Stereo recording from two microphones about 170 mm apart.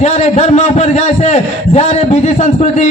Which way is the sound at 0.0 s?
40° left (ahead or behind).